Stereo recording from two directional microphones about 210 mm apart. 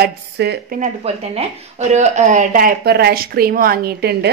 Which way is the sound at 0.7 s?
35° right (ahead or behind).